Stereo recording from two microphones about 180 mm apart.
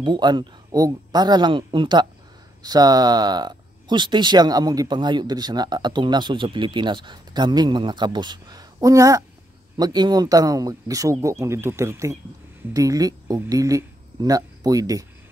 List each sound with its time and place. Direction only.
0.0 s speech: 25° right (ahead or behind)